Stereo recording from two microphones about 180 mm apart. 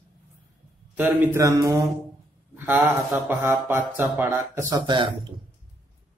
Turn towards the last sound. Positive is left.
turn(degrees=-25)  # may be behind; listen again after turning